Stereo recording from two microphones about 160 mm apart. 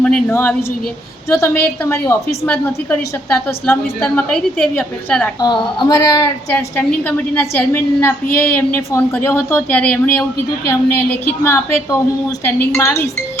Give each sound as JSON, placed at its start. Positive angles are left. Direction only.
{"t": 0.0, "sound": "a woman's voice", "side_deg": 10}
{"t": 5.4, "sound": "a woman's voice", "side_deg": 25}